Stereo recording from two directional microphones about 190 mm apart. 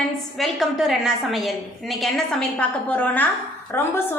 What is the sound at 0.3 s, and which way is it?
A woman's voice, centre (ahead or behind).